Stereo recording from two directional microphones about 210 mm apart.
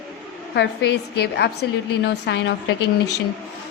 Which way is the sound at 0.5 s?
55° left (ahead or behind).